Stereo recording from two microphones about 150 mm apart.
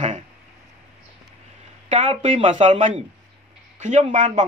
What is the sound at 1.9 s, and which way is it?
Speech, 50° right (ahead or behind).